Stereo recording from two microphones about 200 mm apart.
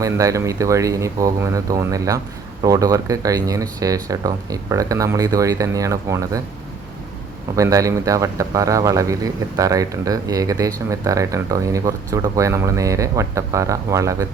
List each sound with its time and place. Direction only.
0.0 s speech: 15° right (ahead or behind)
7.5 s speech: 15° right (ahead or behind)